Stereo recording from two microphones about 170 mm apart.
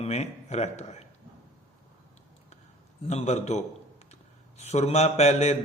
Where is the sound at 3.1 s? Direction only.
40° left (ahead or behind).